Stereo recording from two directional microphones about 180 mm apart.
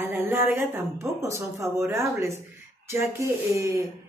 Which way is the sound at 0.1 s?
10° right (ahead or behind).